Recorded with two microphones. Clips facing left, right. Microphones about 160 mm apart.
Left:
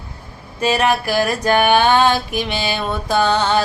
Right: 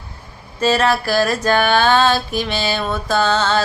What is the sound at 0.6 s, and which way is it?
Music, 15° left (ahead or behind).